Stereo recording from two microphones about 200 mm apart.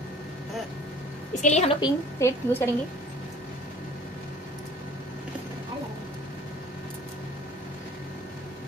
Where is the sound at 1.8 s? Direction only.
15° left (ahead or behind).